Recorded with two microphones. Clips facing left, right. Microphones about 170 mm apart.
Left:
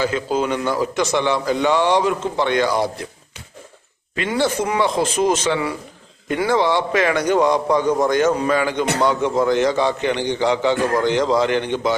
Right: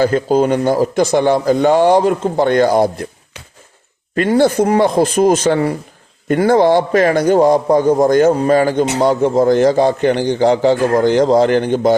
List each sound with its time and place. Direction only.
0.0 s speech: 45° right (ahead or behind)
4.1 s a man's voice: 45° right (ahead or behind)